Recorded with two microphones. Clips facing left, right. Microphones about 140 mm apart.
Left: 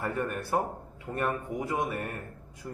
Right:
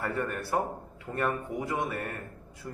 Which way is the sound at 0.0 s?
15° left (ahead or behind).